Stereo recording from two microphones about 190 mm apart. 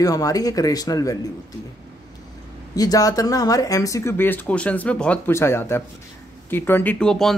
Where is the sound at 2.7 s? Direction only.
20° left (ahead or behind).